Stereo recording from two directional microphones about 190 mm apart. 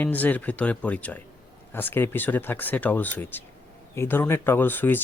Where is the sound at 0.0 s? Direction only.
10° left (ahead or behind).